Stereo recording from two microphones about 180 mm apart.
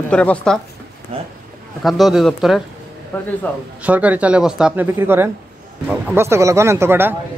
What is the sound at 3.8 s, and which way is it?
Speech, 10° right (ahead or behind).